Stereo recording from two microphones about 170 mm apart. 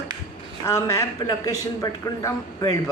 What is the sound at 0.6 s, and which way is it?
Speech, 15° left (ahead or behind).